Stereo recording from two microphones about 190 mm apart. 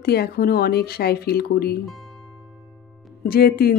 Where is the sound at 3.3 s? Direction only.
50° left (ahead or behind).